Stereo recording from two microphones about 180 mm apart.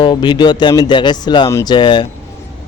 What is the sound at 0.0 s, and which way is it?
Speech, 25° left (ahead or behind).